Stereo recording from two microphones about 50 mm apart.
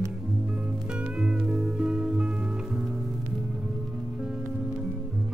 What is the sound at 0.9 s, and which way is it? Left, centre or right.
Music, right.